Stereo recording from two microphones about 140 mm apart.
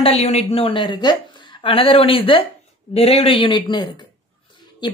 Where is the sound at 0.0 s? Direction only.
50° left (ahead or behind).